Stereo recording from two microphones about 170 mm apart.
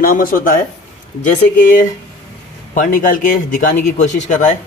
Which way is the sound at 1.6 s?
55° left (ahead or behind).